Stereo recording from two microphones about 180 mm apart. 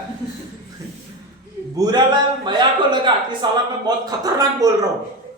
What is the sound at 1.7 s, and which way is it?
A man's voice, 25° right (ahead or behind).